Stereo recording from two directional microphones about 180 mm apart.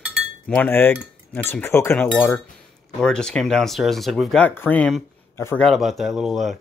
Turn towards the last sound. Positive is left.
turn(degrees=0)  # may be behind; listen again after turning